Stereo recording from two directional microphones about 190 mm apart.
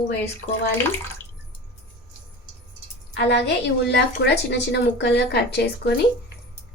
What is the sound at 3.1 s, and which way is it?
Speech, 65° left (ahead or behind).